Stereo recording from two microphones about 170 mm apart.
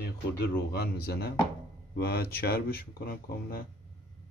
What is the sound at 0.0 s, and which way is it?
Speech, 65° left (ahead or behind).